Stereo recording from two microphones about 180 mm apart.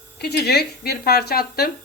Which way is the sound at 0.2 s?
65° left (ahead or behind).